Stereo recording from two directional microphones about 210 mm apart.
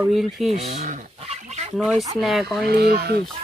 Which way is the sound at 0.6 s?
35° right (ahead or behind).